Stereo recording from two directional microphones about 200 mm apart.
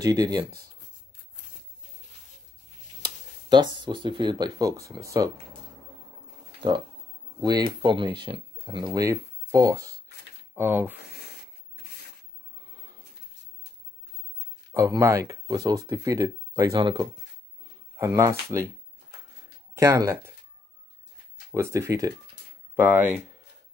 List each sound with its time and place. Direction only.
0.0 s speech: 20° right (ahead or behind)
3.4 s speech: 20° right (ahead or behind)
7.4 s speech: 20° right (ahead or behind)
14.7 s speech: 15° right (ahead or behind)
19.7 s speech: 15° right (ahead or behind)
21.5 s speech: 15° right (ahead or behind)